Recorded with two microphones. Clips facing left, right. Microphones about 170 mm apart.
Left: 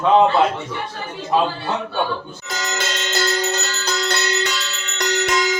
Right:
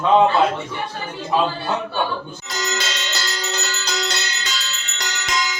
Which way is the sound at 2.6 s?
50° left (ahead or behind).